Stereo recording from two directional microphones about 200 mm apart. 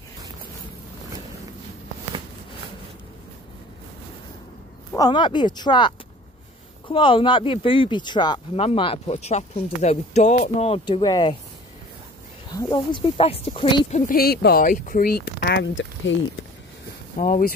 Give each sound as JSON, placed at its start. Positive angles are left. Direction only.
{"t": 4.9, "sound": "speech", "side_deg": 20}
{"t": 12.5, "sound": "speech", "side_deg": 20}
{"t": 13.8, "sound": "speech", "side_deg": 40}
{"t": 17.2, "sound": "speech", "side_deg": 45}